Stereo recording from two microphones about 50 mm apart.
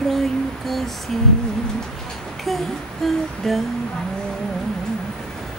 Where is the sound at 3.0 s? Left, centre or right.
Centre.